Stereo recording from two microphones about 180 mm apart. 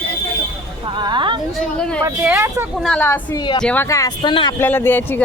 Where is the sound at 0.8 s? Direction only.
25° right (ahead or behind).